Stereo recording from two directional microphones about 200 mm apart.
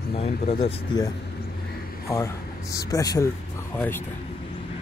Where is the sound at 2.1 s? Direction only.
15° left (ahead or behind).